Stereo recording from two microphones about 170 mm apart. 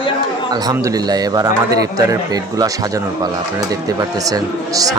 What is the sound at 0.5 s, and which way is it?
A man's voice, 20° right (ahead or behind).